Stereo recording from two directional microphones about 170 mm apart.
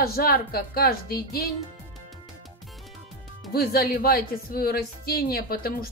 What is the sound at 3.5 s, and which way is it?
Speech, 65° left (ahead or behind).